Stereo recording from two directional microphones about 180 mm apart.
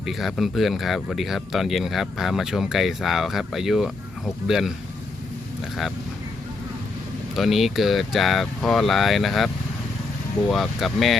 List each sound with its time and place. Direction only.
0.0 s speech: centre (ahead or behind)
7.3 s speech: centre (ahead or behind)
10.5 s speech: centre (ahead or behind)